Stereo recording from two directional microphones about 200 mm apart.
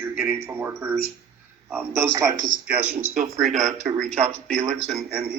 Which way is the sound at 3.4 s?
35° right (ahead or behind).